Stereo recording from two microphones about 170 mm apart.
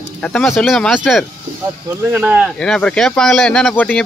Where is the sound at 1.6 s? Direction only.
10° right (ahead or behind); by 4.0 s 5° left (ahead or behind).